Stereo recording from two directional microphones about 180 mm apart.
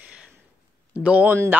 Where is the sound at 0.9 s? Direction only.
5° right (ahead or behind).